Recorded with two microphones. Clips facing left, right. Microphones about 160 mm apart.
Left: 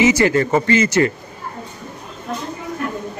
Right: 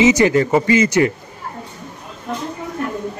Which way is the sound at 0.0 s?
20° right (ahead or behind).